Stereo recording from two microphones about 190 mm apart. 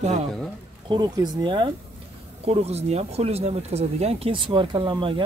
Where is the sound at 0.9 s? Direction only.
20° right (ahead or behind).